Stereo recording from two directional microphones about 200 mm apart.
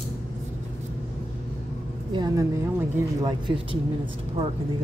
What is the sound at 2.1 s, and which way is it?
A woman's voice, 20° right (ahead or behind).